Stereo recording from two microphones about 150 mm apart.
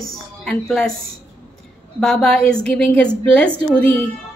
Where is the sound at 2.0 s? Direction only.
5° left (ahead or behind).